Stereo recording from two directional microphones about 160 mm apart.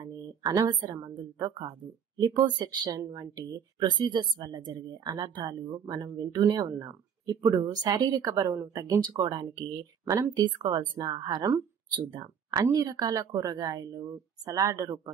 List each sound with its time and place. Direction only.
0.0 s speech: 25° right (ahead or behind)